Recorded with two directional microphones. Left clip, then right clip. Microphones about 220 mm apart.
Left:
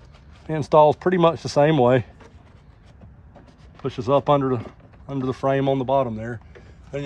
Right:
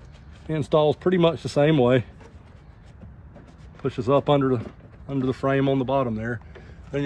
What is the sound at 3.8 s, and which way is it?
Speech, 25° left (ahead or behind).